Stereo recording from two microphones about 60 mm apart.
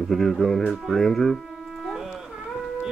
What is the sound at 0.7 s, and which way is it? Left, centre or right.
Music, centre.